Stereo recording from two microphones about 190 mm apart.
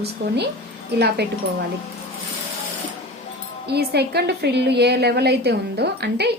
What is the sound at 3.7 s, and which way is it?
Speech, 60° right (ahead or behind).